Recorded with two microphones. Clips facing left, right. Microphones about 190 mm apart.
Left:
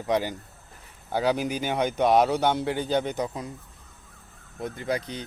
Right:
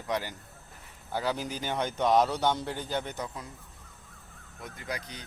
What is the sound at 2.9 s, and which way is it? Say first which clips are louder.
Speech: left 8 dB; 15° left (ahead or behind).